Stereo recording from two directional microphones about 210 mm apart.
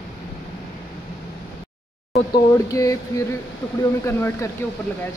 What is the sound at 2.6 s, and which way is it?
Speech, 15° left (ahead or behind).